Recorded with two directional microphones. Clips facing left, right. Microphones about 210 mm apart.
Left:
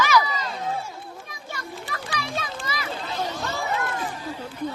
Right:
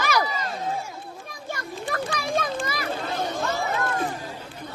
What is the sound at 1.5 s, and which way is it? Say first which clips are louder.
Children playing: right 4 dB; 50° right (ahead or behind).